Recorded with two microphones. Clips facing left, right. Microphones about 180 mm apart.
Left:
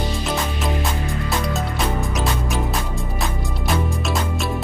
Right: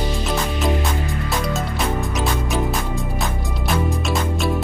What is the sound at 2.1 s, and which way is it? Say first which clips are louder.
Music: right 1 dB; centre (ahead or behind).